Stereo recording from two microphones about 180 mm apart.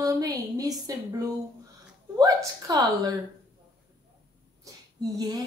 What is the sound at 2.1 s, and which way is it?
A woman's voice, 20° right (ahead or behind).